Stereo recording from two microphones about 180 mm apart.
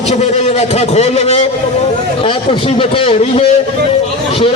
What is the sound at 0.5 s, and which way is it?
Speech, 35° left (ahead or behind).